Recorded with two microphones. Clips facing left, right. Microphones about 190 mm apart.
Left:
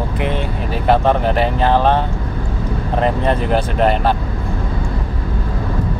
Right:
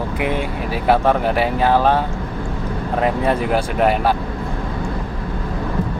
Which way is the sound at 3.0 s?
10° right (ahead or behind).